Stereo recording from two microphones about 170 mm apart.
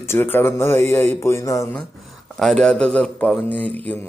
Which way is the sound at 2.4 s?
Centre (ahead or behind).